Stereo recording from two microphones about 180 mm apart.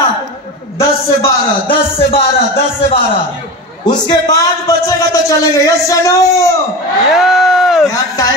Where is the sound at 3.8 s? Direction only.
20° left (ahead or behind).